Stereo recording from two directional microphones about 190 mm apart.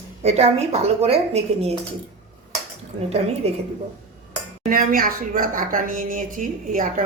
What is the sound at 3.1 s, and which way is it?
Speech, 35° right (ahead or behind).